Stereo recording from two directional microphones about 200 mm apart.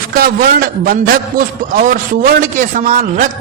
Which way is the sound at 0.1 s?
45° right (ahead or behind).